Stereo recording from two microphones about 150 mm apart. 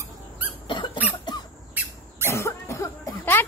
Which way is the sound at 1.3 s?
30° left (ahead or behind).